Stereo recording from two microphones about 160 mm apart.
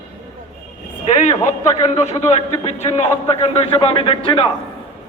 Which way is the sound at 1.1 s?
45° left (ahead or behind).